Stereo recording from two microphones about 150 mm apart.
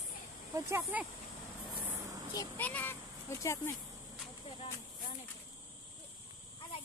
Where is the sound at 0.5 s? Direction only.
15° right (ahead or behind).